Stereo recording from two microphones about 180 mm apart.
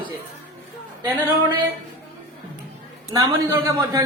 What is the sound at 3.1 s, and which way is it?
Speech, 15° right (ahead or behind).